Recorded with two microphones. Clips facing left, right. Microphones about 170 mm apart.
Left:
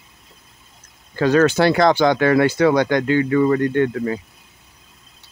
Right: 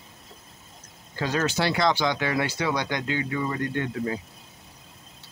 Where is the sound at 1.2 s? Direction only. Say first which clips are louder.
Left 11 dB; 60° left (ahead or behind).